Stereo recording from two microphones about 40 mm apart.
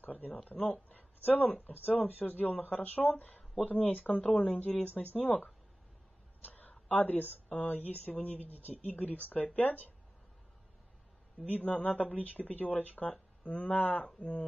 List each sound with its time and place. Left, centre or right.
0.0 s speech: left
6.4 s a sound: left
7.4 s speech: left
8.5 s speech: right
8.8 s speech: left
11.6 s speech: left
13.1 s speech: left
14.0 s speech: left